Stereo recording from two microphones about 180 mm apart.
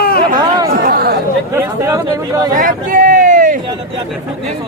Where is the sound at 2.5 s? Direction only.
50° right (ahead or behind).